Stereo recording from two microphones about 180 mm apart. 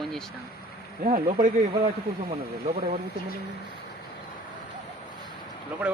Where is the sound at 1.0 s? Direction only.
45° right (ahead or behind).